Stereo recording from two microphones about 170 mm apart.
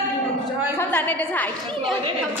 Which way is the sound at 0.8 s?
10° left (ahead or behind).